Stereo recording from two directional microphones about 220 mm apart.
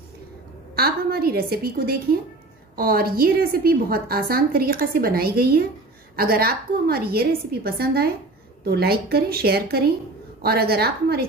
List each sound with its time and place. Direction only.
0.7 s a woman's voice: 45° right (ahead or behind)